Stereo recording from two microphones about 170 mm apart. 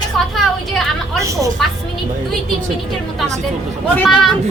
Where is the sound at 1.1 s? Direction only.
20° right (ahead or behind).